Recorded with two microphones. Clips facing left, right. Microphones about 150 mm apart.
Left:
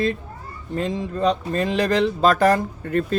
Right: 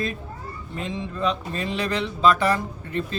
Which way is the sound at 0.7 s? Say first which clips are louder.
Left 6 dB; 40° left (ahead or behind).